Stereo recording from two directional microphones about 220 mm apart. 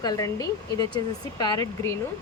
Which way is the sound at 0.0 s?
15° left (ahead or behind).